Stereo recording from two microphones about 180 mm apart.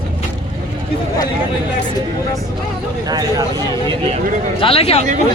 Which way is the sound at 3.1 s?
20° right (ahead or behind).